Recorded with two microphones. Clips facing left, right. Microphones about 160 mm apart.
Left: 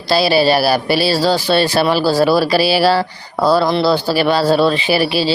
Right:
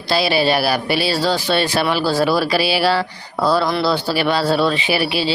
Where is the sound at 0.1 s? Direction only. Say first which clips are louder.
Left 4 dB; 35° left (ahead or behind).